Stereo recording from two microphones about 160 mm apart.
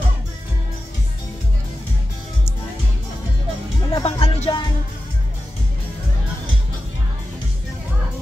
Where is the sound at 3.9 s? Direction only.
40° left (ahead or behind).